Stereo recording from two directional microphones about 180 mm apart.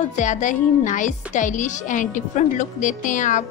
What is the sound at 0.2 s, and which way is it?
A woman's voice, 45° left (ahead or behind).